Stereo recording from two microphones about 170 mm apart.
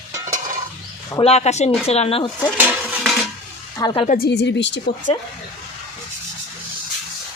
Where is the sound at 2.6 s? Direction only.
10° right (ahead or behind).